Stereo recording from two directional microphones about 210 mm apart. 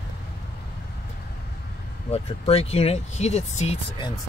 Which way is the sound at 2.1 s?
30° left (ahead or behind).